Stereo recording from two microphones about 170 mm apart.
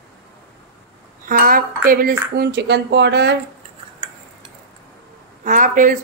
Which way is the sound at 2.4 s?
75° right (ahead or behind).